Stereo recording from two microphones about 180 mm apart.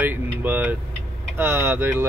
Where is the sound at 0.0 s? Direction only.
10° right (ahead or behind).